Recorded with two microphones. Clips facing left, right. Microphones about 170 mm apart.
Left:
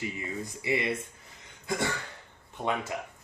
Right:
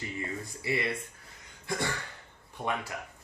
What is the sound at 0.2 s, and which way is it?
Speech, 20° left (ahead or behind).